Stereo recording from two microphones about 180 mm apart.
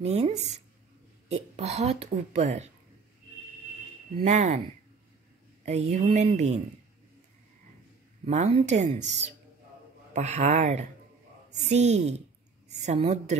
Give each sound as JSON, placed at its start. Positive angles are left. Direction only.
{"t": 0.0, "sound": "speech", "side_deg": -35}
{"t": 4.2, "sound": "speech", "side_deg": -40}
{"t": 5.7, "sound": "speech", "side_deg": -35}
{"t": 8.3, "sound": "a woman's voice", "side_deg": -40}